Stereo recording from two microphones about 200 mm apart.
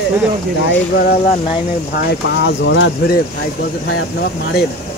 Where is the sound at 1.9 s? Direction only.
50° left (ahead or behind).